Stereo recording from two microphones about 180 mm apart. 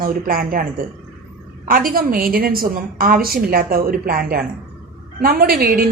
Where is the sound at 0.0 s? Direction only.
55° right (ahead or behind).